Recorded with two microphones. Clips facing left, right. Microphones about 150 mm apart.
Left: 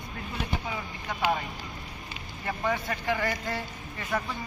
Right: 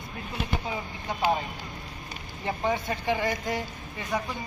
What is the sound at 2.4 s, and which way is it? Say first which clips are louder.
Speech: right 2 dB; 20° right (ahead or behind).